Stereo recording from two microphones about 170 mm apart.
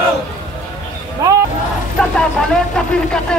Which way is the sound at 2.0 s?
5° left (ahead or behind).